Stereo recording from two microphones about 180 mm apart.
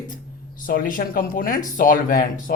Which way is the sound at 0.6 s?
50° left (ahead or behind).